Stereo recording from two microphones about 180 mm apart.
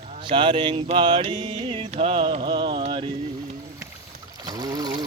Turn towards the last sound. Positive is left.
turn(degrees=-20)  # may be behind; listen again after turning